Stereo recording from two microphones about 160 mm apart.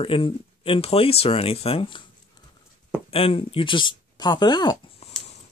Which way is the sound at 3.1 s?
35° left (ahead or behind).